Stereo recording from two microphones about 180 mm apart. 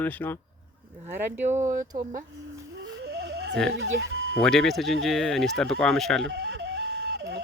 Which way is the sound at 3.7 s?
90° right.